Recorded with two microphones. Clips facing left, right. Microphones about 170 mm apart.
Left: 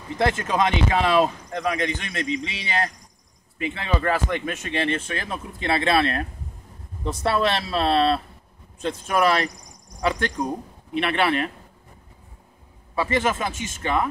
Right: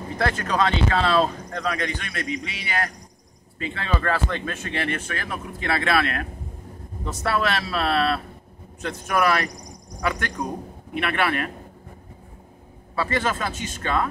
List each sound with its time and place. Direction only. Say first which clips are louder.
0.2 s speech: left 1 dB; 20° left (ahead or behind)
12.9 s speech: left 2 dB; 15° left (ahead or behind)